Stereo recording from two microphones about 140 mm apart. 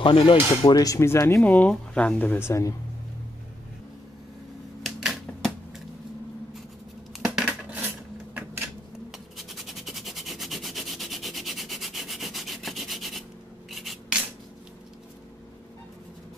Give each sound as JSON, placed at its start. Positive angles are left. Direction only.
{"t": 0.0, "sound": "speech", "side_deg": 40}
{"t": 4.8, "sound": "typewriter", "side_deg": 0}
{"t": 7.2, "sound": "scissors", "side_deg": -10}
{"t": 9.4, "sound": "a sound", "side_deg": 0}
{"t": 13.7, "sound": "rub", "side_deg": 0}